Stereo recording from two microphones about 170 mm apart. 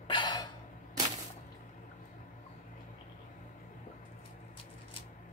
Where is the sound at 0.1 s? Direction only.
25° left (ahead or behind).